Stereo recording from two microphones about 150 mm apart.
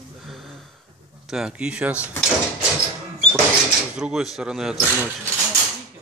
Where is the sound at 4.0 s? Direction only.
5° right (ahead or behind).